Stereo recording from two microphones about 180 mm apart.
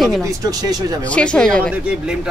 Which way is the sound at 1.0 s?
5° left (ahead or behind).